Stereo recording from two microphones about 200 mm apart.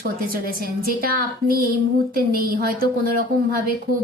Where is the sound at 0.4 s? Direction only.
45° right (ahead or behind).